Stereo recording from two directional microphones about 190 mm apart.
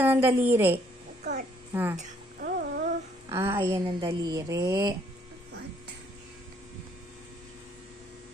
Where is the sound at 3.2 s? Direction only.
15° right (ahead or behind).